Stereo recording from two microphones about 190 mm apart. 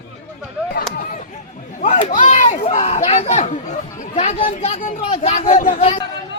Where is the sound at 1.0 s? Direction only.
45° left (ahead or behind).